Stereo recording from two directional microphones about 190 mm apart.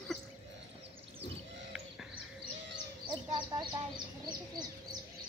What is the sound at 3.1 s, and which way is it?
Bird, 20° right (ahead or behind).